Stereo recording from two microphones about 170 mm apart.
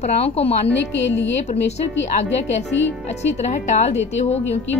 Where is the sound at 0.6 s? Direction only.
90° left.